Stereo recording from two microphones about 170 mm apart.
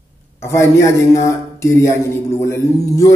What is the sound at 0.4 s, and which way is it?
A man's voice, 15° left (ahead or behind).